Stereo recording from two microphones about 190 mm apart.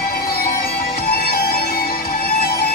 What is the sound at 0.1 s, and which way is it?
Music, 50° left (ahead or behind).